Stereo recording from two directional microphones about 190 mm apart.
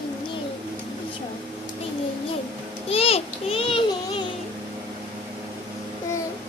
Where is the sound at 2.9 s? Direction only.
30° left (ahead or behind).